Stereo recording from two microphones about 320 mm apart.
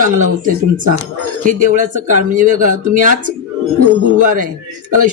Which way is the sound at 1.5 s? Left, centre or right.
Right.